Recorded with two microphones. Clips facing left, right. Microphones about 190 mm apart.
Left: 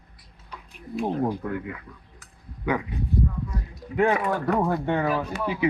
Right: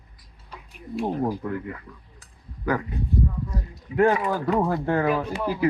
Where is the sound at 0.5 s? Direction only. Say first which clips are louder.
Right 1 dB; centre (ahead or behind).